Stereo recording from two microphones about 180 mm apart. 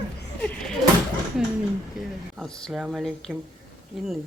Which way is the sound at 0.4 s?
5° left (ahead or behind).